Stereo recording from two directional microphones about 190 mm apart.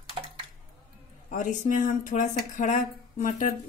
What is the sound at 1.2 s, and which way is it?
A woman's voice, 40° left (ahead or behind).